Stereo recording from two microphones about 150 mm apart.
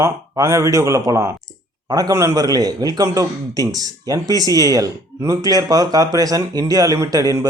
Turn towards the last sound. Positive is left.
turn(degrees=-25)  # may be behind; listen again after turning